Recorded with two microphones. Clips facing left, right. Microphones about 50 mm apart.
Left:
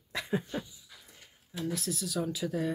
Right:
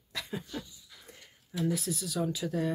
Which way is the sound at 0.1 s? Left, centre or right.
Left.